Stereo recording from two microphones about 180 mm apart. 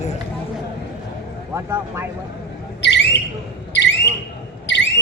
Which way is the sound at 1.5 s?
15° right (ahead or behind).